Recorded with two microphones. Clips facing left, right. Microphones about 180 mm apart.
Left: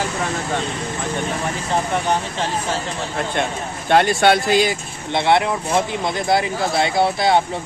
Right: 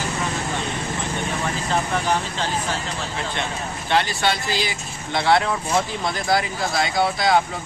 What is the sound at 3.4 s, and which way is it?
Speech, 50° left (ahead or behind).